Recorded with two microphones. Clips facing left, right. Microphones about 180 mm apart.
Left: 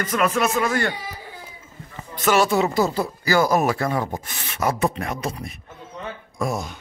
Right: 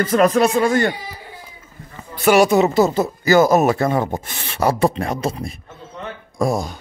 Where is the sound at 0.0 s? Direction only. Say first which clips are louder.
Right 7 dB; 35° right (ahead or behind).